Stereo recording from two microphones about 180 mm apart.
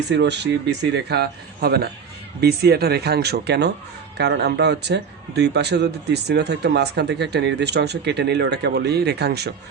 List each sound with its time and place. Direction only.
0.1 s a man's voice: 75° right (ahead or behind)